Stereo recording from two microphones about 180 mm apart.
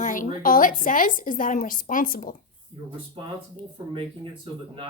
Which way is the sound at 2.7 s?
30° right (ahead or behind).